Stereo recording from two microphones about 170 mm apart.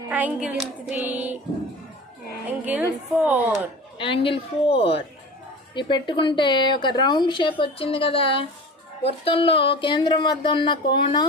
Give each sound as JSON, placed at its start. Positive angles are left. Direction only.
{"t": 0.1, "sound": "child singing", "side_deg": -10}
{"t": 2.6, "sound": "child singing", "side_deg": -10}
{"t": 3.9, "sound": "a woman's voice", "side_deg": 30}